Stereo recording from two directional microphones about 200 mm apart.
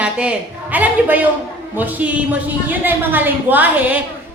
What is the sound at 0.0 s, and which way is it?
A woman's voice, 5° right (ahead or behind).